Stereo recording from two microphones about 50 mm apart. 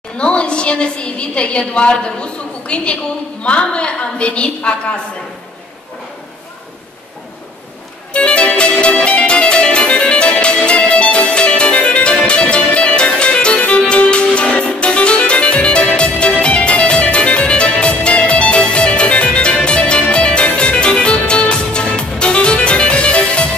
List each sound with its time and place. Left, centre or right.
0.2 s a sound: left
3.4 s a woman's voice: left
8.1 s music: left